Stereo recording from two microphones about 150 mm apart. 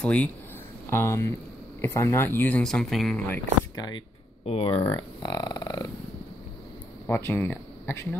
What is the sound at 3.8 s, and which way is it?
Speech, 25° left (ahead or behind).